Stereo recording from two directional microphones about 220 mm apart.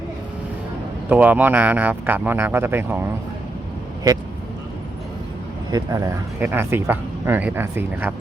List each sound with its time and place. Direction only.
1.1 s speech: 10° right (ahead or behind)
5.7 s speech: 15° right (ahead or behind)